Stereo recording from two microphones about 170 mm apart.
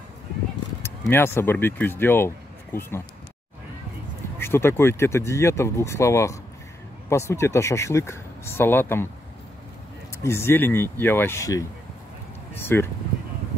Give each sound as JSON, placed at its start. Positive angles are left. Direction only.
{"t": 1.1, "sound": "speech", "side_deg": 15}
{"t": 4.4, "sound": "speech", "side_deg": 15}
{"t": 10.2, "sound": "speech", "side_deg": 15}